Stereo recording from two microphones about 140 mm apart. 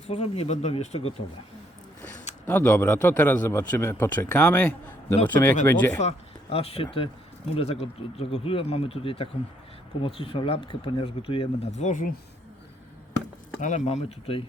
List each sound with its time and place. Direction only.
0.1 s speech: 50° left (ahead or behind)
2.5 s a man's voice: 15° left (ahead or behind)
6.0 s speech: 45° left (ahead or behind); by 12.1 s 65° left (ahead or behind)
13.6 s speech: 60° left (ahead or behind)